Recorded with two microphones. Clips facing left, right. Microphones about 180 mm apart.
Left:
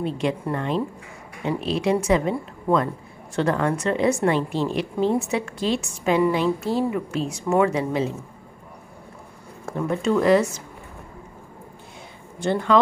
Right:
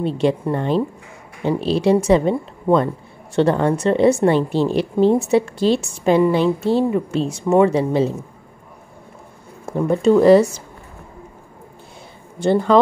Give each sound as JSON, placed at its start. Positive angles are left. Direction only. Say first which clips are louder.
{"t": 0.0, "sound": "a woman's voice", "louder": "right 6 dB", "side_deg": -30}
{"t": 9.7, "sound": "a woman's voice", "louder": "right 7 dB", "side_deg": -30}
{"t": 12.4, "sound": "a woman's voice", "louder": "right 5 dB", "side_deg": -35}